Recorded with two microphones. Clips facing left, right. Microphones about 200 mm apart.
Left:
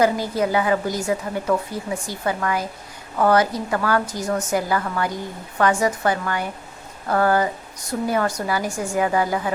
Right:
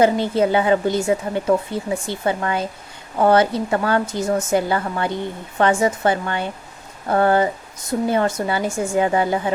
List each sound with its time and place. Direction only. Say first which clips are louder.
0.0 s a woman's voice: right 3 dB; 25° right (ahead or behind)